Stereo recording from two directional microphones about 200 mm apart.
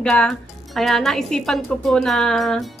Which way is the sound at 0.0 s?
5° left (ahead or behind).